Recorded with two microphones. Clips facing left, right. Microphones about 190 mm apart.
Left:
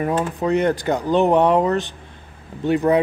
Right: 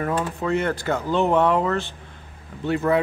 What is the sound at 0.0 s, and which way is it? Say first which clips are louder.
Speech: left 4 dB; 20° left (ahead or behind).